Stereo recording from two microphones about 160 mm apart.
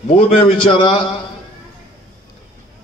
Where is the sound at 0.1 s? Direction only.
35° left (ahead or behind).